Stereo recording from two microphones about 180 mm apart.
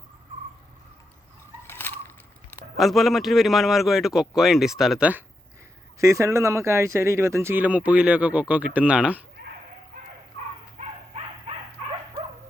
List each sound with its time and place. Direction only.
1.6 s crushing: 15° left (ahead or behind)
2.7 s a man's voice: centre (ahead or behind)
10.8 s dog: 35° right (ahead or behind)